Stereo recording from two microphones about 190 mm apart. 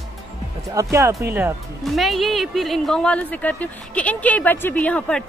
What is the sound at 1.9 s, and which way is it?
Speech, centre (ahead or behind).